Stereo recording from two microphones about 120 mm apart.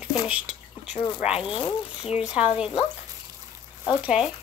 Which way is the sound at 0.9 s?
45° left (ahead or behind).